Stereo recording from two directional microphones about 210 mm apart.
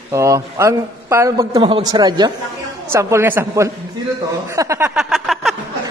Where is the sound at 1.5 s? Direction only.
25° right (ahead or behind).